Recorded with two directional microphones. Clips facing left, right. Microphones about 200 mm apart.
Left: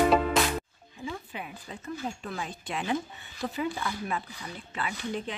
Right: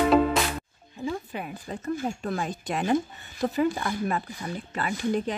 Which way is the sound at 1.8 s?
50° right (ahead or behind).